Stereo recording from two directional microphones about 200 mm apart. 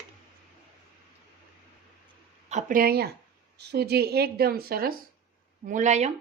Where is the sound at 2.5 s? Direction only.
45° right (ahead or behind).